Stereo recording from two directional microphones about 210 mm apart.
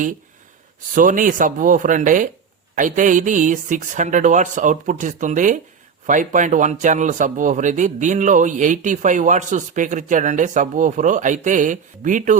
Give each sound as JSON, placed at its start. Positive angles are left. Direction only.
{"t": 0.9, "sound": "speech", "side_deg": -40}